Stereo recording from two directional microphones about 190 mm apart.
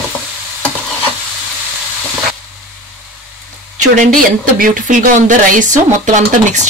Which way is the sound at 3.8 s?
45° right (ahead or behind).